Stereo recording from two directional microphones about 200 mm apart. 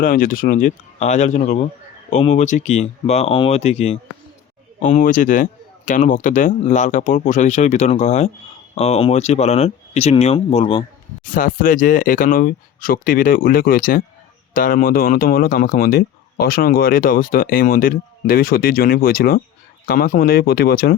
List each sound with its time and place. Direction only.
0.0 s speech: 45° left (ahead or behind)
11.3 s speech: 45° left (ahead or behind)